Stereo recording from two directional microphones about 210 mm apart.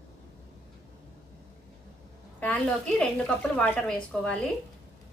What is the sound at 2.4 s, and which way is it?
A woman's voice, 5° left (ahead or behind).